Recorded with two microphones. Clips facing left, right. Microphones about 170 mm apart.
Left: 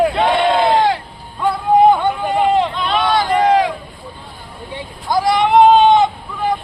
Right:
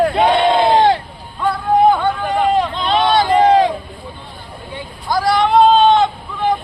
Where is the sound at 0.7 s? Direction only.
20° right (ahead or behind).